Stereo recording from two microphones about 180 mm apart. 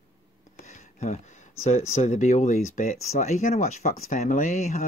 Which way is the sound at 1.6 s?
40° left (ahead or behind).